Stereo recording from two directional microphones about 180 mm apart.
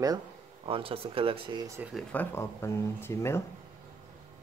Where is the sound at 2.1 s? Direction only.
15° left (ahead or behind).